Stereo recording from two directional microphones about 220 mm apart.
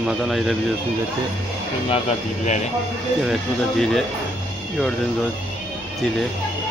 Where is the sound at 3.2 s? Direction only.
Centre (ahead or behind).